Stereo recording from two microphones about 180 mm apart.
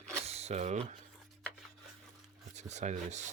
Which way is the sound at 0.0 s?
35° right (ahead or behind).